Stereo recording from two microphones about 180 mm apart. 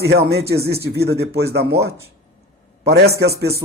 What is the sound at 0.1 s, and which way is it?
A man's voice, 65° right (ahead or behind).